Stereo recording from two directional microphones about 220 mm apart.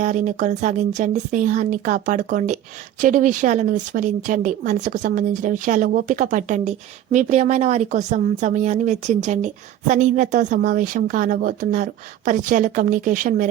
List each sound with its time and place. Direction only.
0.0 s speech: 35° right (ahead or behind)